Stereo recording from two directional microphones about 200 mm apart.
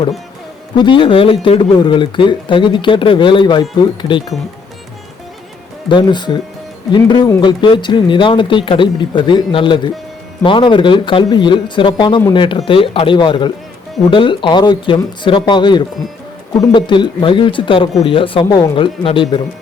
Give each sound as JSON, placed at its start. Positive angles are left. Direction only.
{"t": 0.8, "sound": "speech", "side_deg": 25}
{"t": 5.9, "sound": "speech", "side_deg": 25}